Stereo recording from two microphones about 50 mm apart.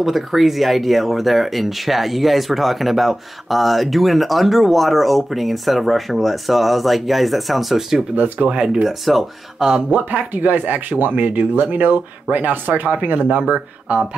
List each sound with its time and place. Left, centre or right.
0.0 s speech: centre
8.1 s speech: right
8.8 s speech: centre
9.6 s speech: centre
9.8 s speech: right